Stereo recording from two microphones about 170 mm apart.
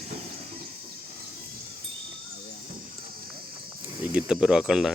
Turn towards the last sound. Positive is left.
turn(degrees=0)  # may be behind; listen again after turning